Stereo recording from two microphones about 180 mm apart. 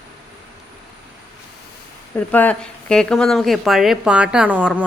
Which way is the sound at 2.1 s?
10° left (ahead or behind).